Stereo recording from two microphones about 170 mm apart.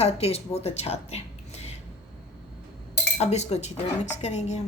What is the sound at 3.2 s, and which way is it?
A woman's voice, 40° left (ahead or behind).